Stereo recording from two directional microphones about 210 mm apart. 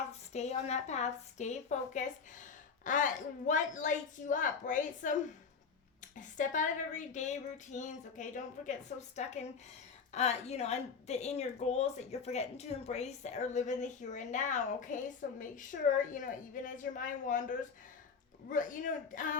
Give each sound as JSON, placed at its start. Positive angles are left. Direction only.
{"t": 0.3, "sound": "speech", "side_deg": 30}
{"t": 6.1, "sound": "speech", "side_deg": 35}